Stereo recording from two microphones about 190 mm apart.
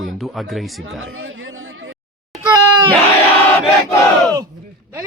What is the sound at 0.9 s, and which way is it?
Chatter, 90° right.